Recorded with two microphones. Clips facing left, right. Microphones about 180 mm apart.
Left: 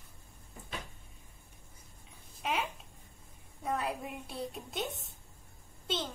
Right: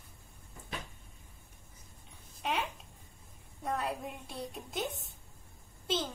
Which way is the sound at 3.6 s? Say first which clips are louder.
Even; centre (ahead or behind).